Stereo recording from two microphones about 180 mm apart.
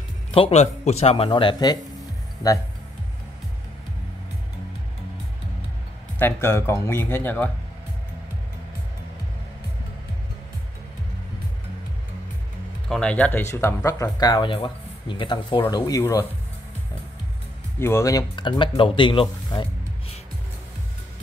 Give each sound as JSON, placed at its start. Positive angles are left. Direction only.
{"t": 0.3, "sound": "speech", "side_deg": 35}
{"t": 6.1, "sound": "speech", "side_deg": 15}
{"t": 12.8, "sound": "speech", "side_deg": 5}
{"t": 17.7, "sound": "speech", "side_deg": 15}